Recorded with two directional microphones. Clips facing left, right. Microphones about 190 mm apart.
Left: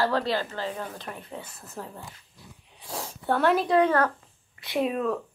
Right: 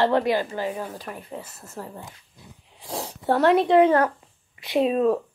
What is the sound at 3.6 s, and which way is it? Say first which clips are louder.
A woman's voice: right 5 dB; 25° right (ahead or behind).